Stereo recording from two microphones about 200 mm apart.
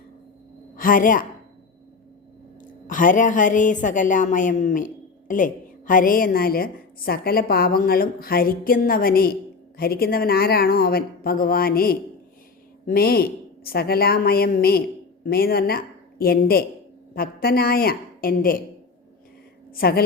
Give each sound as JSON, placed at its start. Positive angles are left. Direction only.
{"t": 0.8, "sound": "a woman's voice", "side_deg": 45}
{"t": 2.6, "sound": "a woman's voice", "side_deg": 40}
{"t": 19.7, "sound": "a woman's voice", "side_deg": 50}